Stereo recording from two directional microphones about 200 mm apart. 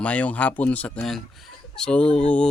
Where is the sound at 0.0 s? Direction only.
5° left (ahead or behind).